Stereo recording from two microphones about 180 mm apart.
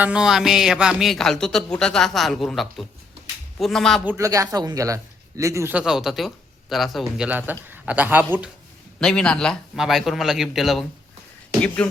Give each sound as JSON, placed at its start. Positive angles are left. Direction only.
{"t": 0.0, "sound": "speech", "side_deg": -5}
{"t": 4.2, "sound": "speech", "side_deg": -20}
{"t": 9.0, "sound": "speech", "side_deg": 5}
{"t": 11.8, "sound": "beatboxing", "side_deg": 5}